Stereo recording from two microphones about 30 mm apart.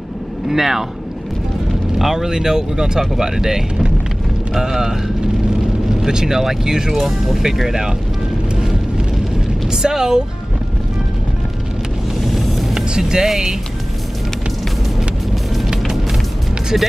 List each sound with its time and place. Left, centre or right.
0.5 s speech: centre
2.0 s speech: centre
6.9 s speech: centre
8.5 s vehicle: right
9.7 s speech: centre
12.2 s music: centre
12.7 s speech: right